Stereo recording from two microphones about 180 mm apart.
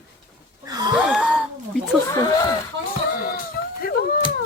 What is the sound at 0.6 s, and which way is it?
Wheeze, 20° right (ahead or behind).